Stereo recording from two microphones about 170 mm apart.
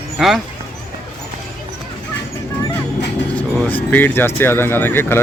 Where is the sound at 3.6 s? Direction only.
10° left (ahead or behind).